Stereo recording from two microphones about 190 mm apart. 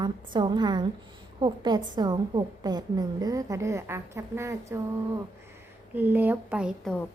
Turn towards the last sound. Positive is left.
turn(degrees=-5)  # may be behind; listen again after turning